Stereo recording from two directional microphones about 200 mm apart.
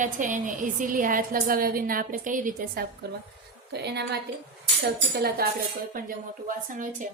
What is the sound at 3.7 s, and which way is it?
A woman's voice, 55° right (ahead or behind).